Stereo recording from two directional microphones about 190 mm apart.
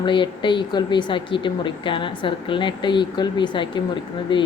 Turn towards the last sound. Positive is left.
turn(degrees=25)  # may be behind; listen again after turning